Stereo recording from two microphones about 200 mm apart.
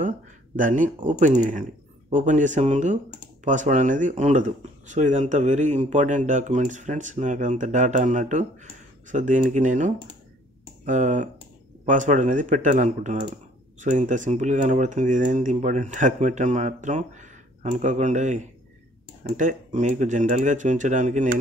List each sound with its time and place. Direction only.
0.6 s speech: 40° right (ahead or behind)